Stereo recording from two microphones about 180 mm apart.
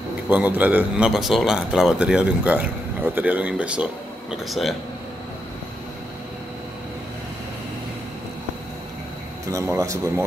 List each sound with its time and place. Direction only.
0.3 s speech: 10° right (ahead or behind)
9.5 s speech: 15° right (ahead or behind)